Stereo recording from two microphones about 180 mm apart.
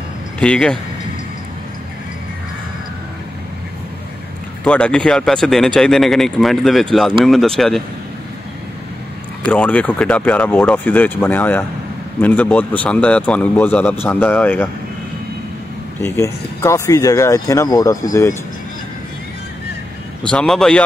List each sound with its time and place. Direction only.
0.4 s speech: 5° left (ahead or behind)
4.6 s speech: 5° left (ahead or behind)
9.5 s speech: 5° left (ahead or behind)
16.0 s speech: 15° left (ahead or behind)
20.2 s speech: 5° left (ahead or behind)